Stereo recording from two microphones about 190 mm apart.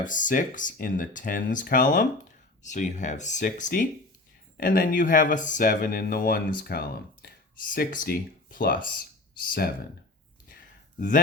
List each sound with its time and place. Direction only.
0.0 s speech: 45° left (ahead or behind)